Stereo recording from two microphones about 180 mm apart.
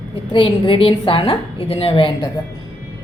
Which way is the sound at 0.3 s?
30° left (ahead or behind).